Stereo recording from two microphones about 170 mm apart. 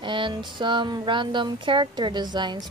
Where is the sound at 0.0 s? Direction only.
30° right (ahead or behind).